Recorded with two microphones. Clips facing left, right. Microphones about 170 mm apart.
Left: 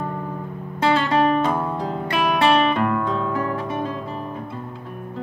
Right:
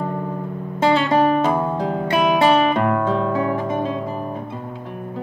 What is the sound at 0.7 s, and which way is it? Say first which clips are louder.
Music: right 2 dB; 25° right (ahead or behind).